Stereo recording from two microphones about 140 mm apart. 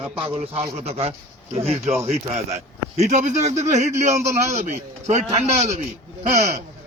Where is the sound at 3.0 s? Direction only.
55° right (ahead or behind).